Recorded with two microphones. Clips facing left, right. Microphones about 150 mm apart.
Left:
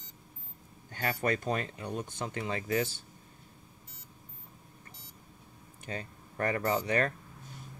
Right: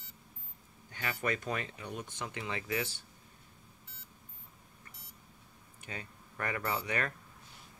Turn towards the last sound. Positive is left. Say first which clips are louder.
# left 6 dB
turn(degrees=35)  # may be behind; listen again after turning